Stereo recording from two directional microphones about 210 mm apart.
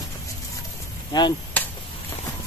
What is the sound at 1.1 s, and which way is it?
Speech, 20° left (ahead or behind).